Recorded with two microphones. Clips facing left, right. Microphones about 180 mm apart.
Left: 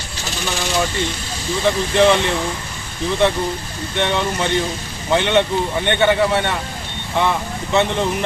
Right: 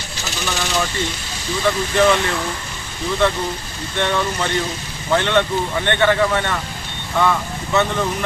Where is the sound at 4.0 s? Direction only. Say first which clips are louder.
Left 1 dB; 15° left (ahead or behind).